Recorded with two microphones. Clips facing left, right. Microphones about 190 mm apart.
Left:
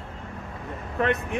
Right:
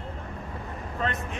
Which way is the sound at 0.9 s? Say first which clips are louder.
Left 7 dB; 65° left (ahead or behind).